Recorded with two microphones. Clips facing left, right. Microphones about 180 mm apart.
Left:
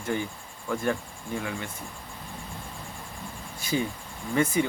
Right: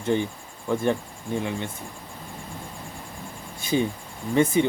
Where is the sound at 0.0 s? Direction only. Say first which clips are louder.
Right 6 dB; 25° right (ahead or behind).